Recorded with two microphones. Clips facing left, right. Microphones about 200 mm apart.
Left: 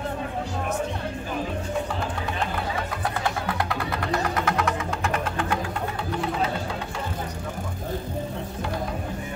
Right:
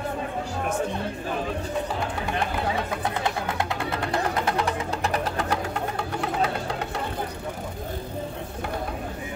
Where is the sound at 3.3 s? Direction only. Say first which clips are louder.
Even; 20° right (ahead or behind); by 5.6 s 40° right (ahead or behind).